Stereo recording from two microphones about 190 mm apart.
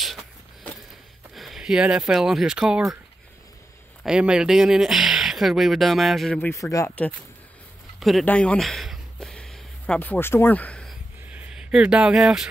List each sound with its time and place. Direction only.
0.0 s a sound: centre (ahead or behind)
1.3 s speech: centre (ahead or behind)
4.0 s speech: 5° right (ahead or behind)
6.5 s speech: 15° left (ahead or behind)
8.0 s a sound: centre (ahead or behind)
11.2 s speech: 5° right (ahead or behind)